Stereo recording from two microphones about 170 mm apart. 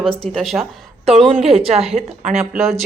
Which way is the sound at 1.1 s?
35° right (ahead or behind).